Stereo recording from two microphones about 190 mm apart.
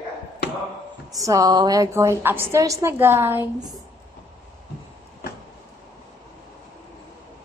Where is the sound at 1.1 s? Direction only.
20° right (ahead or behind).